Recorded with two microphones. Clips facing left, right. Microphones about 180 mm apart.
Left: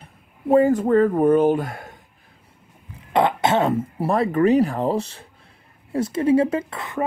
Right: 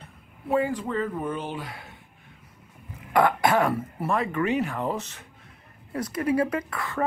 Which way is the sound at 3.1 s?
25° left (ahead or behind).